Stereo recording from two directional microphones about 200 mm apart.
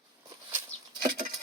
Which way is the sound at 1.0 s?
45° right (ahead or behind).